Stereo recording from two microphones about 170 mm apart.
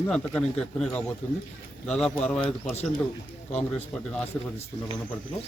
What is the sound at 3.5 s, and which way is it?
Speech, 40° left (ahead or behind).